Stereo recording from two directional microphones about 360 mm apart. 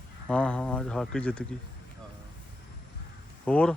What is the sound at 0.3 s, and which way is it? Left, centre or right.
Speech, centre.